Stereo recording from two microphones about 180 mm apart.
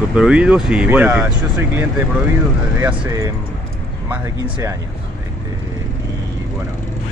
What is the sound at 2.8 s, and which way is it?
Speech, 15° right (ahead or behind).